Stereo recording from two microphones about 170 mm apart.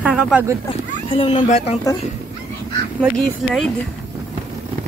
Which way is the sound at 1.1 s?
30° left (ahead or behind).